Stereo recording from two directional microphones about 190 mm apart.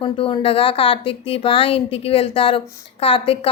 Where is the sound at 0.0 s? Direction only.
30° left (ahead or behind).